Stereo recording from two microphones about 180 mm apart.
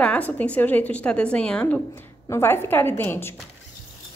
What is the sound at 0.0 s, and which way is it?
A woman's voice, 5° left (ahead or behind).